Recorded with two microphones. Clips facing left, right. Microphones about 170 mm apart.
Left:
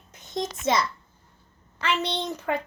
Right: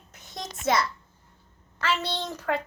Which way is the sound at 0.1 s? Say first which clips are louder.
Left 9 dB; 20° left (ahead or behind).